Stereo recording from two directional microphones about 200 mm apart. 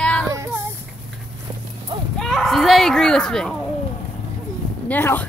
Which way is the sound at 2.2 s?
Centre (ahead or behind).